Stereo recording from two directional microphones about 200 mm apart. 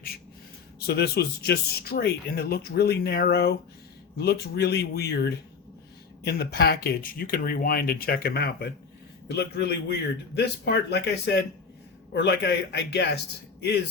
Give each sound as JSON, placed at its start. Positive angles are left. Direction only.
{"t": 0.8, "sound": "a man's voice", "side_deg": 50}